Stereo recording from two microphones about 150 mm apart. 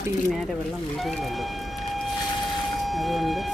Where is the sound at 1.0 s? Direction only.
Centre (ahead or behind).